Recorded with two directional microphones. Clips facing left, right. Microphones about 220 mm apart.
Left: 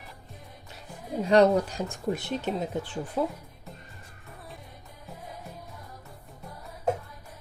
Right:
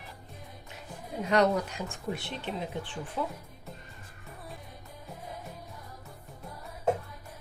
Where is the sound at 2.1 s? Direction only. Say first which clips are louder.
Left 6 dB; 40° left (ahead or behind).